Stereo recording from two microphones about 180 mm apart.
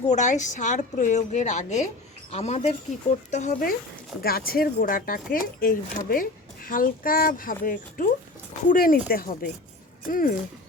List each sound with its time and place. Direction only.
0.0 s a woman's voice: 40° left (ahead or behind)